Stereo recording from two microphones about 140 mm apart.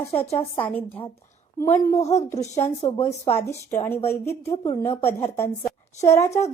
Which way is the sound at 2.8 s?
25° left (ahead or behind).